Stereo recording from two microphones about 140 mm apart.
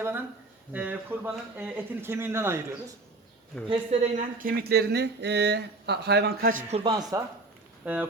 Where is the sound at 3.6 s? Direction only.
50° right (ahead or behind).